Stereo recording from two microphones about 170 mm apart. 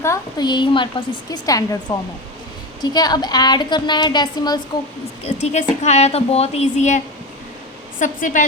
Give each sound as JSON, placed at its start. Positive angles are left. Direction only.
{"t": 0.0, "sound": "a woman's voice", "side_deg": 20}
{"t": 5.2, "sound": "a woman's voice", "side_deg": 40}